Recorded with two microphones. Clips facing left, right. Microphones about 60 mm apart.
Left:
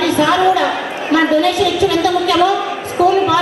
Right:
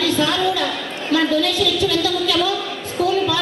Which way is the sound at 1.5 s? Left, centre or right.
Centre.